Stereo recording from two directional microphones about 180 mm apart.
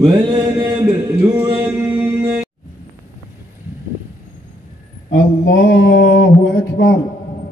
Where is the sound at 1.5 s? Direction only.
10° right (ahead or behind).